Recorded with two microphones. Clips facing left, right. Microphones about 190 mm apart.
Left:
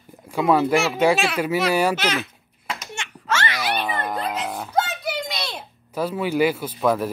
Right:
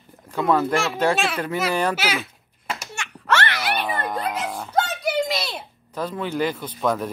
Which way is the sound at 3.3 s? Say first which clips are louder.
Right 3 dB; 65° right (ahead or behind).